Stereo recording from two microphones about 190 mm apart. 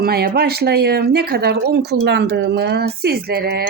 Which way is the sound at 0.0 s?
55° right (ahead or behind).